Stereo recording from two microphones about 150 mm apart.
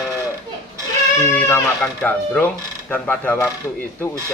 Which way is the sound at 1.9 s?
5° left (ahead or behind).